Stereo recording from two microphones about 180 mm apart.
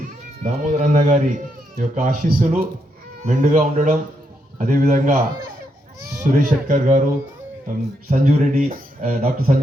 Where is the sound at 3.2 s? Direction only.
45° right (ahead or behind).